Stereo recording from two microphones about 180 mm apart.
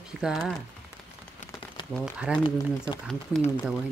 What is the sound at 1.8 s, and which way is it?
Crumpling, 25° left (ahead or behind).